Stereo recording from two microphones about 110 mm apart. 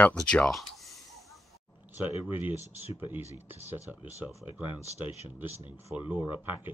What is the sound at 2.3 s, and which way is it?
Speech, 15° right (ahead or behind).